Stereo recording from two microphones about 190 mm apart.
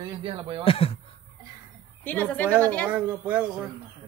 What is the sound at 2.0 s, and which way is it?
Speech, 10° left (ahead or behind).